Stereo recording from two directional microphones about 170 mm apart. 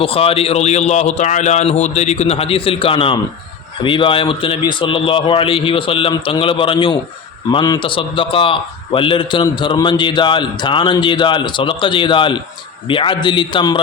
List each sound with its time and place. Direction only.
0.0 s a man's voice: 35° left (ahead or behind)